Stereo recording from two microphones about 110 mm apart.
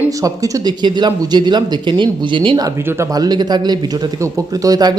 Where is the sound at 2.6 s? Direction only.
30° right (ahead or behind).